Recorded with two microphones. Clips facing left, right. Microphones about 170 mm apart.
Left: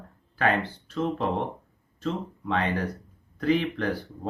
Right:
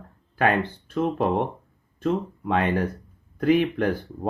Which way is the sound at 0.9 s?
55° right (ahead or behind).